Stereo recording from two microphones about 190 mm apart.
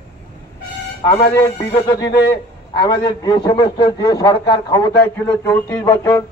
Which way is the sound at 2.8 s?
25° left (ahead or behind).